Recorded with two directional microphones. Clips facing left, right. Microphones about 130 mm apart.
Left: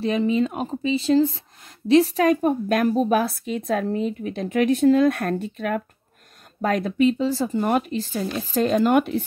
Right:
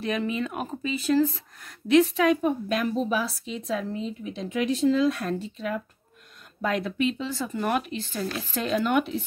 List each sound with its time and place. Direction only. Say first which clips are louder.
0.0 s speech: left 7 dB; 30° left (ahead or behind); by 5.8 s 55° left (ahead or behind)
6.6 s speech: left 6 dB; 45° left (ahead or behind)